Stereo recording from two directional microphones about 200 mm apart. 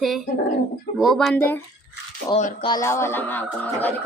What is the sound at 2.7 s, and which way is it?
A man's voice, 15° left (ahead or behind).